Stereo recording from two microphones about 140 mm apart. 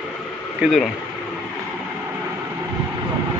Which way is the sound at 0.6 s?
Centre (ahead or behind).